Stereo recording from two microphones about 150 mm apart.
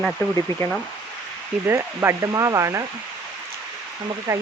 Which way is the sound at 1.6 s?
15° right (ahead or behind).